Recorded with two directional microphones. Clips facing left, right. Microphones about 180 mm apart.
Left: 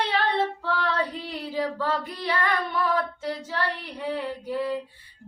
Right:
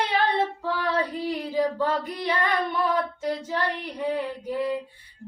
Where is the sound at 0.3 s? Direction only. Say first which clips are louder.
Even; 15° right (ahead or behind).